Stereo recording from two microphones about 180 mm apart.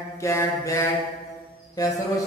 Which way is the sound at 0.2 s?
15° left (ahead or behind).